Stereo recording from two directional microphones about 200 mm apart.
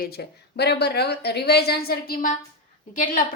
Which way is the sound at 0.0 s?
55° left (ahead or behind).